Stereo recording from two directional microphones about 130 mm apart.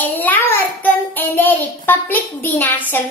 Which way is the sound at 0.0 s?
15° left (ahead or behind).